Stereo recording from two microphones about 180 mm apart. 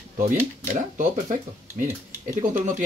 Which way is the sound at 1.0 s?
45° right (ahead or behind).